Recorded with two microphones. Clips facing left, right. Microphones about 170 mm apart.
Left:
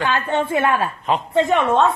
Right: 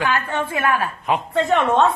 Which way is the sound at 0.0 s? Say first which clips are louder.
Left 2 dB; 25° left (ahead or behind).